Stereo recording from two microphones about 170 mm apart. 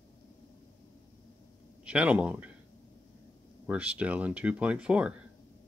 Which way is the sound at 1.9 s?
10° right (ahead or behind).